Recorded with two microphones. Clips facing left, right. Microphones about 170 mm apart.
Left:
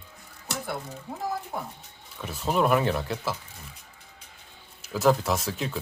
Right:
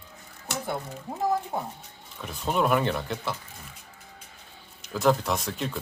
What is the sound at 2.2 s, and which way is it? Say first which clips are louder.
Speech: left 1 dB; 5° left (ahead or behind).